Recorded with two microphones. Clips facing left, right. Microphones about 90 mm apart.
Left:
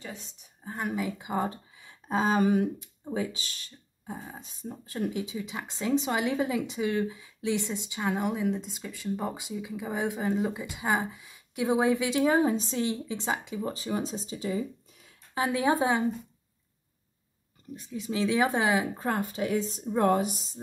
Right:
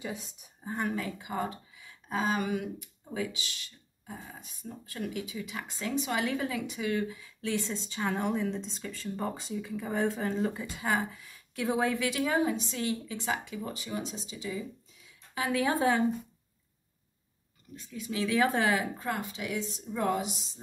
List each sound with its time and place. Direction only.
0.0 s speech: 10° right (ahead or behind)
0.7 s speech: 10° left (ahead or behind); by 14.6 s 40° left (ahead or behind)
15.3 s speech: 25° left (ahead or behind)
17.7 s speech: 20° left (ahead or behind)
18.9 s speech: 35° left (ahead or behind)